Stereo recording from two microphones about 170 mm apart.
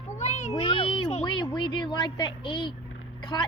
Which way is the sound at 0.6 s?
30° left (ahead or behind).